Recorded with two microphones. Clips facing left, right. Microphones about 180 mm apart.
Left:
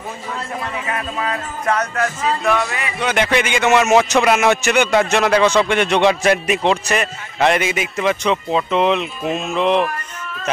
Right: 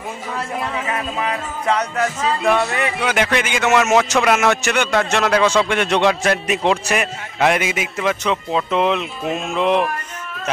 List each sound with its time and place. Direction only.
2.0 s speech: 20° right (ahead or behind)
3.0 s a man's voice: 5° right (ahead or behind)